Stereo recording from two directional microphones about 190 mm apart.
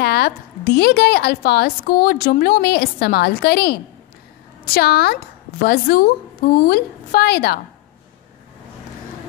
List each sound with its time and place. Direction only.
0.0 s a woman's voice: 60° left (ahead or behind)